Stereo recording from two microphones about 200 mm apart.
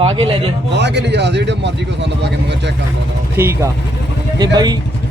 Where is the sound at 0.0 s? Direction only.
25° right (ahead or behind).